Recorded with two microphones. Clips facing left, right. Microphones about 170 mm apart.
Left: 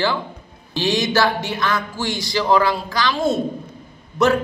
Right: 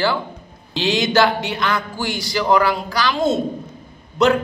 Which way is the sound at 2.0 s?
20° left (ahead or behind).